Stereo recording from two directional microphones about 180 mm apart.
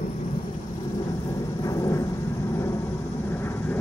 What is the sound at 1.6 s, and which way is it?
Vehicle, 20° left (ahead or behind).